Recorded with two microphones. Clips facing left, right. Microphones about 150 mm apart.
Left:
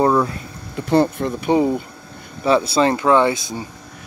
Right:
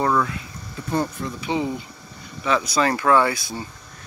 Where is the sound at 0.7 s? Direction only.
70° left (ahead or behind); by 1.8 s 50° left (ahead or behind).